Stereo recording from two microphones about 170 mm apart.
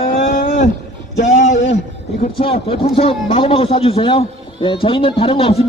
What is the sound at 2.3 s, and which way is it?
Speech, 35° left (ahead or behind).